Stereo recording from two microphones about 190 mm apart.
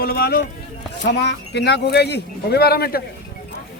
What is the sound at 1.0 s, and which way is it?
Speech, 65° left (ahead or behind).